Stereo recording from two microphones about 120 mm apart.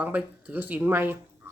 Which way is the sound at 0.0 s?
15° right (ahead or behind).